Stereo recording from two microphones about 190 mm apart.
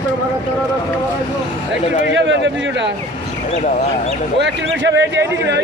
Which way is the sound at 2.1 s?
70° right (ahead or behind).